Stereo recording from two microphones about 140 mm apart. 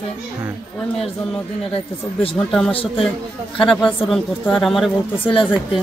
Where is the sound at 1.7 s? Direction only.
40° left (ahead or behind).